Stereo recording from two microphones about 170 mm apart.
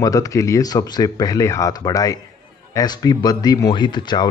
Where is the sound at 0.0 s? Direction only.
20° left (ahead or behind).